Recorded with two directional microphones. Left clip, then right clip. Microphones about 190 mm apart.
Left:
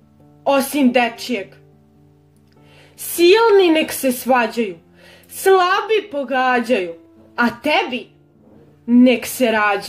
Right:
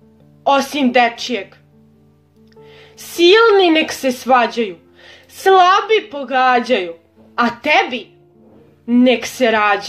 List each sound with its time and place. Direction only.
0.5 s a woman's voice: 15° left (ahead or behind)
2.5 s a woman's voice: 15° left (ahead or behind)